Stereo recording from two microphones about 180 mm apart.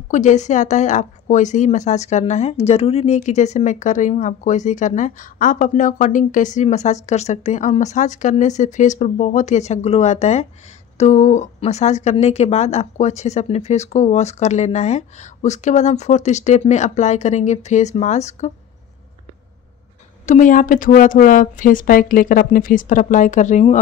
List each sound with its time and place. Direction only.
0.1 s a woman's voice: 40° left (ahead or behind)
20.2 s a woman's voice: 45° left (ahead or behind)